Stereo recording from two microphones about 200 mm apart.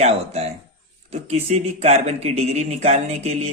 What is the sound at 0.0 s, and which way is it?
Speech, 30° right (ahead or behind).